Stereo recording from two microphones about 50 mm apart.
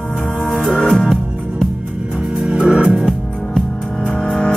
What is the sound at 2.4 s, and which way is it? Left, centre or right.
Music, right.